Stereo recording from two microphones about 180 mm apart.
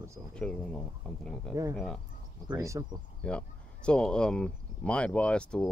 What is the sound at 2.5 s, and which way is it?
Speech, 20° right (ahead or behind).